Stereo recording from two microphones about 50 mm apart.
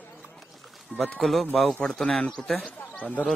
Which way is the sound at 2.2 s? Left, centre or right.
Left.